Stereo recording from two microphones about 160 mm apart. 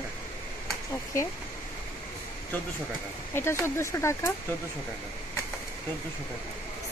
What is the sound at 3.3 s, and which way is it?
Speech, 15° left (ahead or behind).